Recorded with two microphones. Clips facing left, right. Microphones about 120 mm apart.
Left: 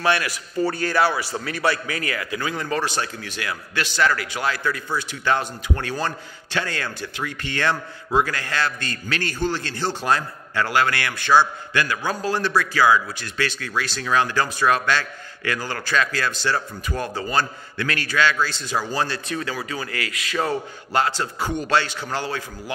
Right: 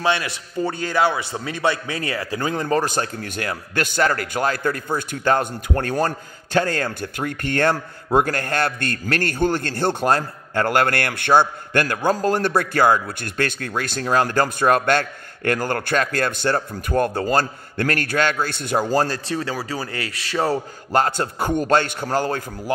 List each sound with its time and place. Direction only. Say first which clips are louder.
0.0 s a man's voice: even; 20° right (ahead or behind); by 18.9 s 55° right (ahead or behind)
18.9 s a man's voice: right 5 dB; 40° right (ahead or behind)